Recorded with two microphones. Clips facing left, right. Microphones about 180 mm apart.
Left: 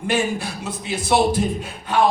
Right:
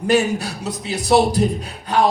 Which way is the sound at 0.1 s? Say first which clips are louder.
Right 5 dB; 40° right (ahead or behind).